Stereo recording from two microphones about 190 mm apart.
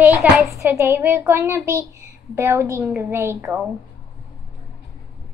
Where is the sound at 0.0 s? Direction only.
5° right (ahead or behind).